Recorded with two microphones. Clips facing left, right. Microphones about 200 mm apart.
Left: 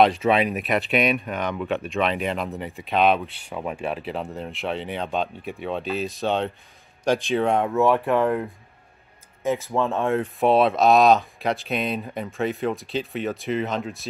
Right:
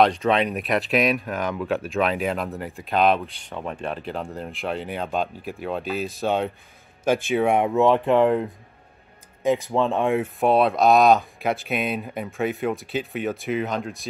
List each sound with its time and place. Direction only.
0.0 s speech: 5° left (ahead or behind); by 10.2 s 15° right (ahead or behind)
10.2 s speech: centre (ahead or behind)